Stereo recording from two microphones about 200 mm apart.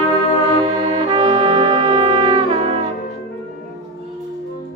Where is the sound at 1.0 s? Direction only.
30° right (ahead or behind).